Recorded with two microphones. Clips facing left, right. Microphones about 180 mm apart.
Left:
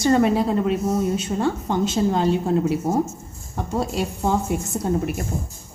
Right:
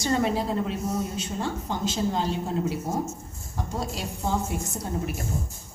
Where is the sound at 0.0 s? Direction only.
60° left (ahead or behind).